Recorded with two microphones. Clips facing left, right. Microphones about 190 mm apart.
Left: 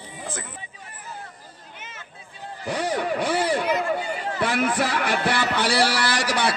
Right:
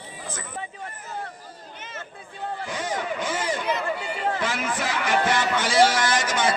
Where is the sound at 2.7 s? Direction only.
65° left (ahead or behind).